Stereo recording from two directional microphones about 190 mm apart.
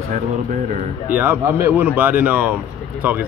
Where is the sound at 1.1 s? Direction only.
10° right (ahead or behind).